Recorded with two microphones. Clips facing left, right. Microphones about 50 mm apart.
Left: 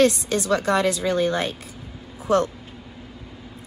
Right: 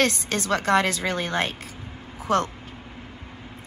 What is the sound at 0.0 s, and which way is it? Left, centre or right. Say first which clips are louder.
A woman's voice: left 5 dB; right.